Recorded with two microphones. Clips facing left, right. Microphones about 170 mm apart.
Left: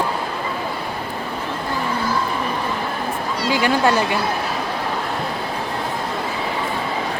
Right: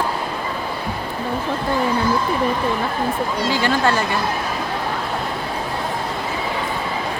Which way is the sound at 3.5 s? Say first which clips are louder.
Left 3 dB; 15° left (ahead or behind).